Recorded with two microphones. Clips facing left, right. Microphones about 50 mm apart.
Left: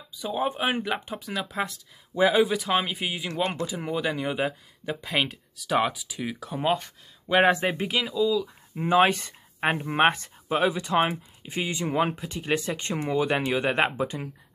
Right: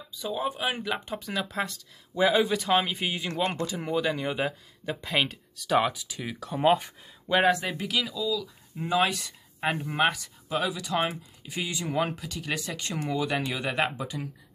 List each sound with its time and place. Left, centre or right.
0.1 s speech: centre
0.4 s speech: left
0.9 s speech: centre
6.6 s speech: centre
7.4 s speech: left